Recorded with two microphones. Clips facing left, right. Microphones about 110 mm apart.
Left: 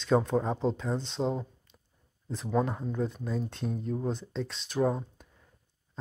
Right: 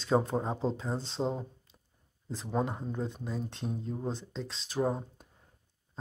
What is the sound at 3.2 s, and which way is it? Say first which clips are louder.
Speech: left 3 dB; centre (ahead or behind).